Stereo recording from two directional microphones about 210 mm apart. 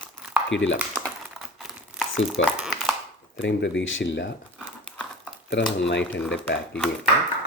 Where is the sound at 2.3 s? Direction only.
Centre (ahead or behind).